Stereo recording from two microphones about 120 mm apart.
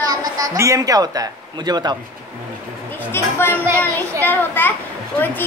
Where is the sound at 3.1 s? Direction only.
20° left (ahead or behind).